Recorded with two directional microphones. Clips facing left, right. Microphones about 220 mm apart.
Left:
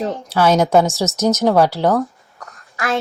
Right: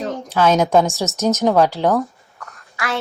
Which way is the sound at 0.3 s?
10° left (ahead or behind).